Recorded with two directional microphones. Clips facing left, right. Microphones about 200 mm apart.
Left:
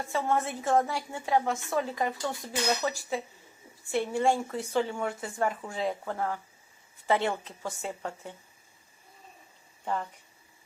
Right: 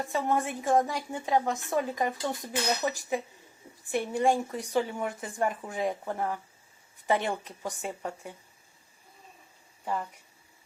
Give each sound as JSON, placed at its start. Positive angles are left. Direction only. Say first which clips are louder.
{"t": 0.1, "sound": "speech", "louder": "left 1 dB", "side_deg": -15}
{"t": 9.8, "sound": "speech", "louder": "even", "side_deg": -5}